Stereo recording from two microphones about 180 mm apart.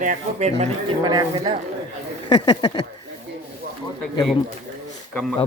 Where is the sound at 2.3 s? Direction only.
25° left (ahead or behind).